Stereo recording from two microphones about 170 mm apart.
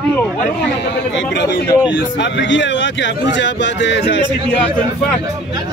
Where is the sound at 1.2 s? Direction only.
90° left.